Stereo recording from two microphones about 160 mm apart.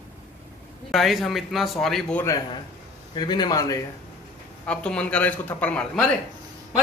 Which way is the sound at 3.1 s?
30° left (ahead or behind).